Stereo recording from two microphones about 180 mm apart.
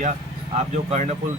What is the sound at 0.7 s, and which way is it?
Speech, 40° right (ahead or behind).